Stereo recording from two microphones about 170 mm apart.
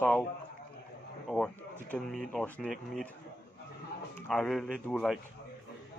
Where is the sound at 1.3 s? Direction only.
5° left (ahead or behind).